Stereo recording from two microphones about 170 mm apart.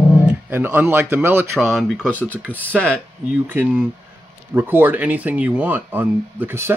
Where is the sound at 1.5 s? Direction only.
Centre (ahead or behind).